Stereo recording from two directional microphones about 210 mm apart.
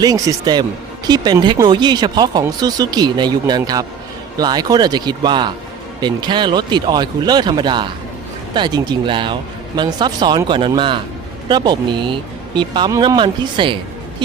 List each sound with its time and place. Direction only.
0.0 s a man's voice: 20° right (ahead or behind)